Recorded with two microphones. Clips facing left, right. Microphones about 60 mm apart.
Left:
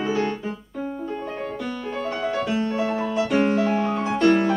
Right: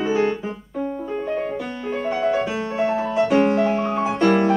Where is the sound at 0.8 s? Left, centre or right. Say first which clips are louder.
Right 4 dB; centre.